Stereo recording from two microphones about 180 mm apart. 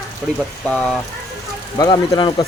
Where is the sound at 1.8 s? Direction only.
25° left (ahead or behind).